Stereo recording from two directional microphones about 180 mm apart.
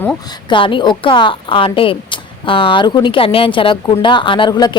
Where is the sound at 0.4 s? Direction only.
25° left (ahead or behind).